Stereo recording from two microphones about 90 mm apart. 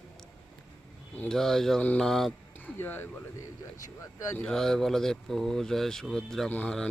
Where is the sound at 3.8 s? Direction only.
35° left (ahead or behind).